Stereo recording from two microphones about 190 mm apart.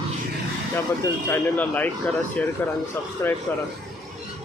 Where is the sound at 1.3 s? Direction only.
10° left (ahead or behind).